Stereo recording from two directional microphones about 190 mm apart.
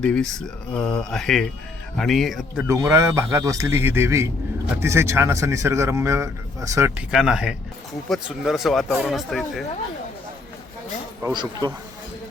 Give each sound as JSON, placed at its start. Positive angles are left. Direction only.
{"t": 0.0, "sound": "speech", "side_deg": 5}
{"t": 2.6, "sound": "a man's voice", "side_deg": -15}
{"t": 7.1, "sound": "speech", "side_deg": -5}
{"t": 11.2, "sound": "speech", "side_deg": -20}